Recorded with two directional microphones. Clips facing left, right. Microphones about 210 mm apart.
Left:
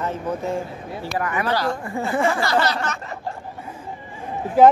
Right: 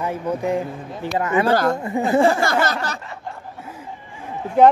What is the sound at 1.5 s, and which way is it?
Speech, 50° right (ahead or behind).